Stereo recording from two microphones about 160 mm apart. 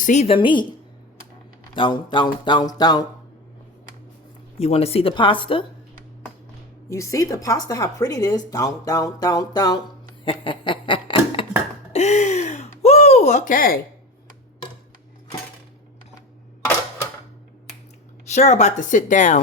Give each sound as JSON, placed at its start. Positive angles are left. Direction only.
{"t": 0.0, "sound": "a woman's voice", "side_deg": 45}
{"t": 1.7, "sound": "a woman's voice", "side_deg": 30}
{"t": 4.5, "sound": "a woman's voice", "side_deg": 40}
{"t": 6.8, "sound": "a woman's voice", "side_deg": 20}
{"t": 10.2, "sound": "snicker", "side_deg": 30}
{"t": 11.9, "sound": "a sound", "side_deg": 45}
{"t": 18.3, "sound": "speech", "side_deg": 45}